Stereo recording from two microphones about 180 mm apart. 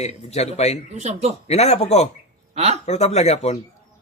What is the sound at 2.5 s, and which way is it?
Speech, 35° right (ahead or behind).